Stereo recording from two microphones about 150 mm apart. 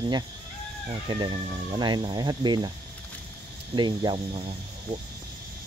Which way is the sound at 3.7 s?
30° right (ahead or behind).